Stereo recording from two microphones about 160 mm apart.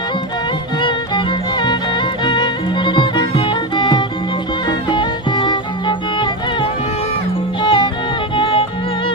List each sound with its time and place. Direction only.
0.8 s music: 30° left (ahead or behind)
7.6 s music: 30° left (ahead or behind)